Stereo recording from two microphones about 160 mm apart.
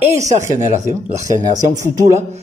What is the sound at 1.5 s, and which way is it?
Speech, 50° right (ahead or behind).